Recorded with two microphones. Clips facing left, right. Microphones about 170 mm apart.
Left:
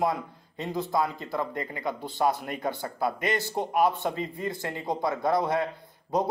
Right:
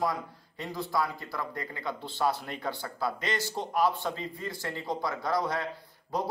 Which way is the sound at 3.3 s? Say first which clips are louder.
Left 4 dB; 55° left (ahead or behind).